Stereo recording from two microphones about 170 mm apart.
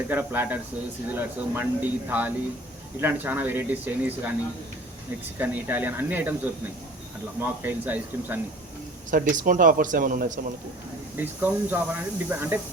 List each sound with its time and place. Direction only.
0.1 s speech: 10° right (ahead or behind)
5.4 s speech: 10° right (ahead or behind)
7.4 s speech: 10° right (ahead or behind)
9.0 s a man's voice: 50° right (ahead or behind)
11.2 s speech: 10° right (ahead or behind)